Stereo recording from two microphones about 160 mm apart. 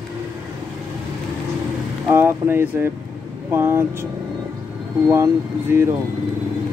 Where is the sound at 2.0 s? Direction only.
15° right (ahead or behind).